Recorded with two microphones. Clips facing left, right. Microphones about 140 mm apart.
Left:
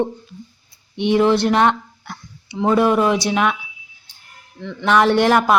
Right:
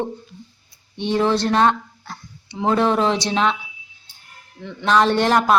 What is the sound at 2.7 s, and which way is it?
Speech, 10° left (ahead or behind).